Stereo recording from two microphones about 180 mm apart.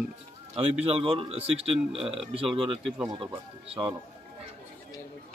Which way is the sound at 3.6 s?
35° right (ahead or behind).